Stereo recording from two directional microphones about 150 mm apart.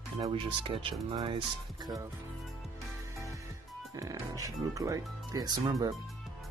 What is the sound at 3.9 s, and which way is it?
Speech, 20° right (ahead or behind).